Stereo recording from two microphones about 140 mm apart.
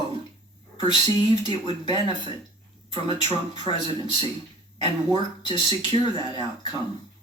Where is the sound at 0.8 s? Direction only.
35° left (ahead or behind).